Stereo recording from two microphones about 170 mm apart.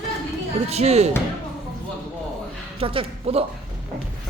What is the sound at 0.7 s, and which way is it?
Speech, 40° right (ahead or behind).